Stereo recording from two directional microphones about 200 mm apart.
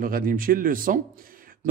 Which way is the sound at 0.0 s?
45° right (ahead or behind).